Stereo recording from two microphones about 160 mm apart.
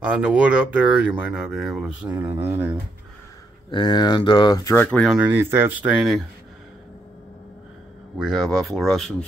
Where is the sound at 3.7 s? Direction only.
30° left (ahead or behind).